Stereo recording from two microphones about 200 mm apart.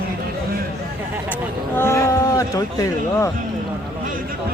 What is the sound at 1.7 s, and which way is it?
Speech, 15° left (ahead or behind).